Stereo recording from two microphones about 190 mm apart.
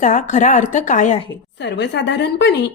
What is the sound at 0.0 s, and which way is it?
Speech, 45° left (ahead or behind).